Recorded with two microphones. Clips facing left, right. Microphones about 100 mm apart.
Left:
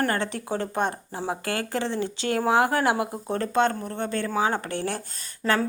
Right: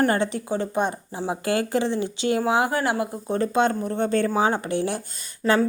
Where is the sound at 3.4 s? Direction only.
10° right (ahead or behind).